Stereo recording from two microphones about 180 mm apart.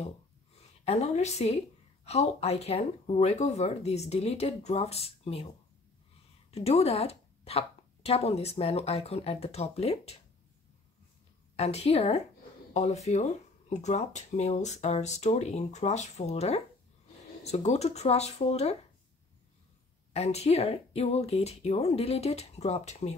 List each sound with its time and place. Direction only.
0.6 s a woman's voice: 35° left (ahead or behind)
6.5 s speech: 35° left (ahead or behind)
11.5 s speech: 35° left (ahead or behind)
20.1 s speech: 35° left (ahead or behind)